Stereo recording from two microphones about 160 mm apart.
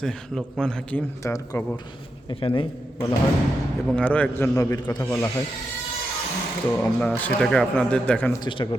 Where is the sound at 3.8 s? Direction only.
10° left (ahead or behind).